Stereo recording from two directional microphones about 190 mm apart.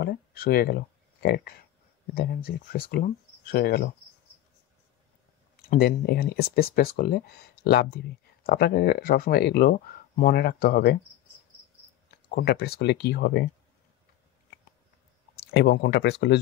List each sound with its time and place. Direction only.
0.0 s speech: 55° left (ahead or behind)
5.6 s speech: 55° left (ahead or behind)
12.1 s speech: 55° left (ahead or behind)
15.3 s speech: 60° left (ahead or behind)